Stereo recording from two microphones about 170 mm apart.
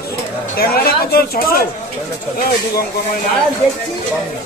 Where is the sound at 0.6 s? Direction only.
65° left (ahead or behind).